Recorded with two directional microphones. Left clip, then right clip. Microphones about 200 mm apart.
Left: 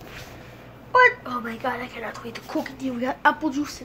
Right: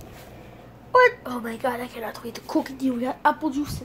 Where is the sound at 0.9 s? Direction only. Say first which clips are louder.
Even; 20° right (ahead or behind).